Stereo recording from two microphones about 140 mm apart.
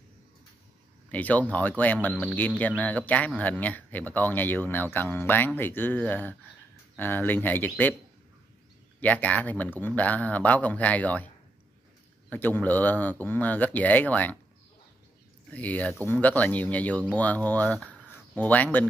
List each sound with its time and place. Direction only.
1.0 s speech: 10° left (ahead or behind)
9.0 s speech: 10° left (ahead or behind)
12.3 s speech: 15° left (ahead or behind)
15.5 s speech: 10° left (ahead or behind)